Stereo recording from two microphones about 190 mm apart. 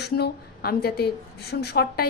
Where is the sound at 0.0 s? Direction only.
55° left (ahead or behind).